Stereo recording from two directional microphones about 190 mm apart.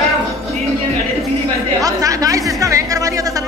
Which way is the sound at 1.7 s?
20° right (ahead or behind).